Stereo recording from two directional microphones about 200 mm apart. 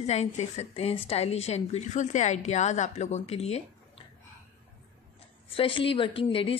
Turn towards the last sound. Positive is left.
turn(degrees=25)  # may be behind; listen again after turning